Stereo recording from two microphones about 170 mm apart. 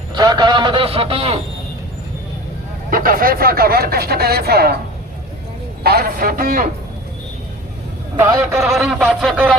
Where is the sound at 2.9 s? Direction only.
55° right (ahead or behind).